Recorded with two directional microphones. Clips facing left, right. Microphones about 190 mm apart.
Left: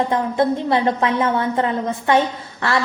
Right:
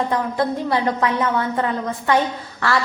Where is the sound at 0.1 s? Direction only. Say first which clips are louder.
Left 3 dB; 25° left (ahead or behind).